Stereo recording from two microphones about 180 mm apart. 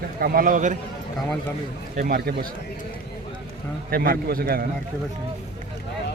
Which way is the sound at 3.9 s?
60° right (ahead or behind).